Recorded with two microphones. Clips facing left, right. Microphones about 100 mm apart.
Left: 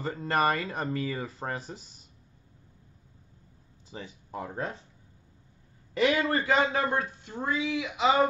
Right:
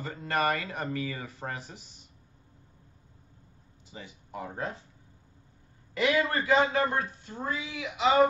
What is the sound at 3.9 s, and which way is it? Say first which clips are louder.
Speech: left 3 dB; 30° left (ahead or behind).